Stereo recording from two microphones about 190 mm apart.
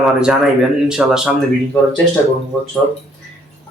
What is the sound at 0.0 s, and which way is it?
Speech, centre (ahead or behind).